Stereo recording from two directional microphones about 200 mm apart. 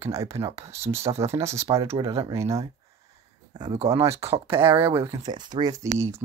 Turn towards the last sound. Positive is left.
turn(degrees=-15)  # may be behind; listen again after turning